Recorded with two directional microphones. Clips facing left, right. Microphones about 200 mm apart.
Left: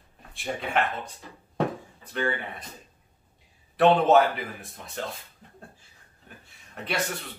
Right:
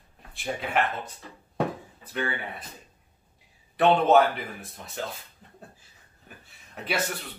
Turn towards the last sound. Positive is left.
turn(degrees=-5)  # may be behind; listen again after turning